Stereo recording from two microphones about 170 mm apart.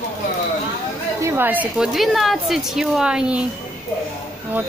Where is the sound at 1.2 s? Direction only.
10° right (ahead or behind).